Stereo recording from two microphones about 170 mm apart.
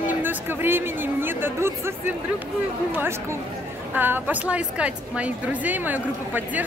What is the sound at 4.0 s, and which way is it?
A woman's voice, 10° right (ahead or behind).